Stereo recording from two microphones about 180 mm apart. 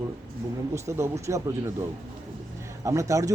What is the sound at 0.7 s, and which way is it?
A man's voice, 15° right (ahead or behind).